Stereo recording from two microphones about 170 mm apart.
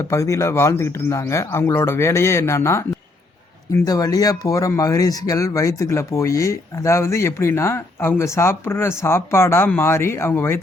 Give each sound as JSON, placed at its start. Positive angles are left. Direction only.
{"t": 0.0, "sound": "speech", "side_deg": 15}